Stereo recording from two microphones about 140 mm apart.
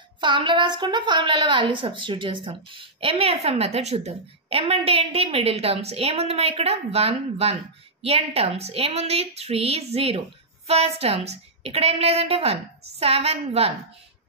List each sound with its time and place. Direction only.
0.2 s a woman's voice: 35° right (ahead or behind)